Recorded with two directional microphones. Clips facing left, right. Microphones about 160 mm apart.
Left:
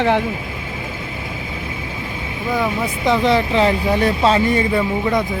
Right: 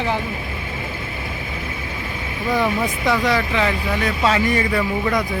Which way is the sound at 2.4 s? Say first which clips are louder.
Even; 5° left (ahead or behind).